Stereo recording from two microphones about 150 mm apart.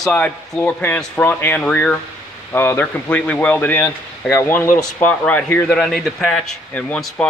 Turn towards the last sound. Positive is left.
turn(degrees=5)  # may be behind; listen again after turning